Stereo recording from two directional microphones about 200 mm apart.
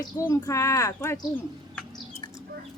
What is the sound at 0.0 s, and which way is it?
Speech, 15° left (ahead or behind).